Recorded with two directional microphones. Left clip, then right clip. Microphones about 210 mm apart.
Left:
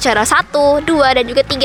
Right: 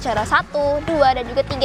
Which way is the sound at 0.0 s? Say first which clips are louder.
Left 6 dB; 50° left (ahead or behind).